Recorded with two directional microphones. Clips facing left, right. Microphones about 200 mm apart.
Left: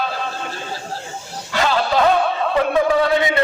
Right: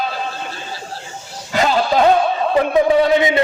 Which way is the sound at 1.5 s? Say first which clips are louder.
Right 2 dB; 20° right (ahead or behind).